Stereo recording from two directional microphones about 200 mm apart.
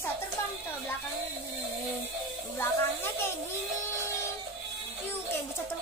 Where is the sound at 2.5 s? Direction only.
10° left (ahead or behind).